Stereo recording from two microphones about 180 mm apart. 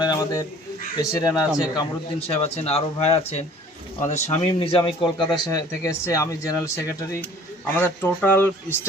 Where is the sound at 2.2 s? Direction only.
35° left (ahead or behind).